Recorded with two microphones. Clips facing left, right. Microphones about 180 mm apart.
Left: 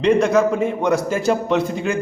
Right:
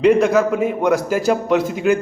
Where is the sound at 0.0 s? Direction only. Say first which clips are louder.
Right 2 dB; centre (ahead or behind).